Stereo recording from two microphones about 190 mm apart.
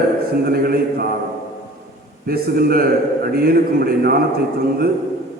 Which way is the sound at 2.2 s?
55° right (ahead or behind).